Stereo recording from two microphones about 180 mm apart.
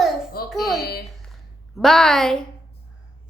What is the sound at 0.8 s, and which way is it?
Speech, 60° left (ahead or behind).